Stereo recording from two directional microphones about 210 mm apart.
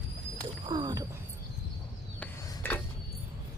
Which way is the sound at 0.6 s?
20° right (ahead or behind).